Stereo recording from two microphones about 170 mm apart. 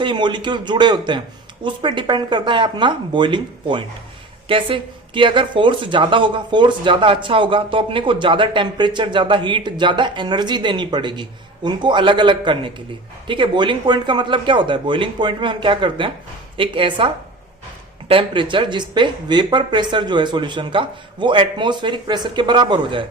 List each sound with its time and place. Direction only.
0.0 s speech: 25° right (ahead or behind)
18.1 s speech: 30° right (ahead or behind)